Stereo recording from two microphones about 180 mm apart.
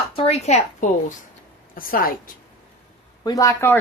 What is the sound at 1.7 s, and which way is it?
Speech, 50° left (ahead or behind).